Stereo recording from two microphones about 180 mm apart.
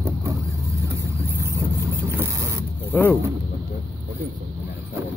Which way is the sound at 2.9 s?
10° left (ahead or behind).